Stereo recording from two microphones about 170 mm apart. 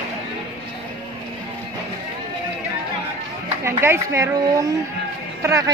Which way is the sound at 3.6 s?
15° right (ahead or behind).